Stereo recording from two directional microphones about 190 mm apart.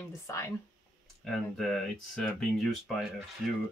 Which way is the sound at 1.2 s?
Centre (ahead or behind).